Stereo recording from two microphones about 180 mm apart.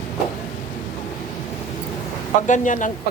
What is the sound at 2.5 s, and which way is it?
Speech, 45° left (ahead or behind).